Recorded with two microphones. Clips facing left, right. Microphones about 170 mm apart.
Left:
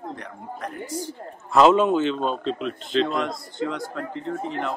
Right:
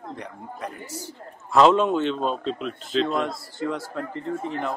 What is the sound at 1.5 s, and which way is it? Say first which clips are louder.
A man's voice: left 1 dB; 5° left (ahead or behind).